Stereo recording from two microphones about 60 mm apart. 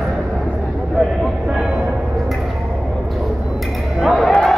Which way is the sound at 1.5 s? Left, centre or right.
Centre.